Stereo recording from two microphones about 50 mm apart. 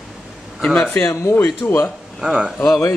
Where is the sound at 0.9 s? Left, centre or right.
Left.